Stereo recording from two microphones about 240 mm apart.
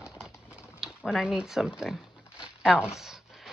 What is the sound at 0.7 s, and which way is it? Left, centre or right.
Speech, centre.